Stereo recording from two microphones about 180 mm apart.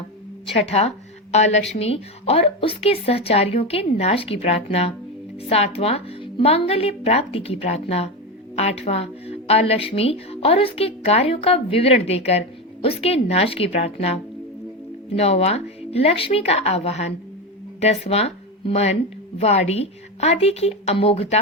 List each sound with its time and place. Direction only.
0.4 s a woman's voice: 35° left (ahead or behind)